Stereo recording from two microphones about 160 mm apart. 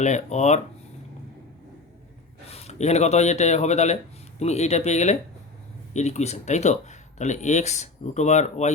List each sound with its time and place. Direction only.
0.0 s speech: 45° left (ahead or behind)
2.5 s a man's voice: 40° left (ahead or behind)